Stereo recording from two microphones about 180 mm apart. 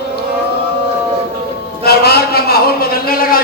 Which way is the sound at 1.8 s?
60° left (ahead or behind).